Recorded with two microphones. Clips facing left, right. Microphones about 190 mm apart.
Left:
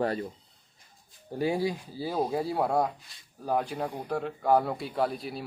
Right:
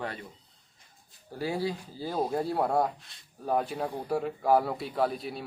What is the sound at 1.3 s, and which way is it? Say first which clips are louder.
A man's voice: left 3 dB; 20° left (ahead or behind).